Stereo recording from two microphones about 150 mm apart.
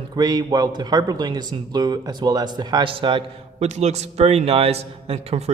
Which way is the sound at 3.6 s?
45° right (ahead or behind).